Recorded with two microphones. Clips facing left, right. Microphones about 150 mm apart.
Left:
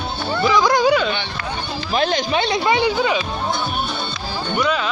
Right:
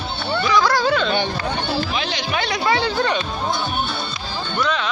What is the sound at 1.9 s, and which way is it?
Music, 45° left (ahead or behind).